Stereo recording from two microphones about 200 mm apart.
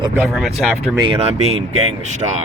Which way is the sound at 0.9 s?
25° right (ahead or behind).